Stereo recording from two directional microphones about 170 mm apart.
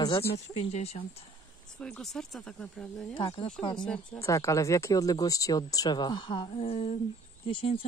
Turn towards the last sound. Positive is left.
turn(degrees=30)  # may be behind; listen again after turning